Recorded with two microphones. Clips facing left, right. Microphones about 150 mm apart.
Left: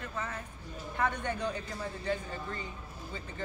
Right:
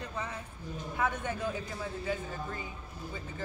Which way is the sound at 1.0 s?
5° right (ahead or behind).